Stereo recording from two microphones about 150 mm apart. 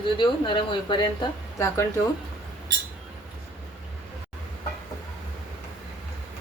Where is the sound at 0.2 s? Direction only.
30° left (ahead or behind).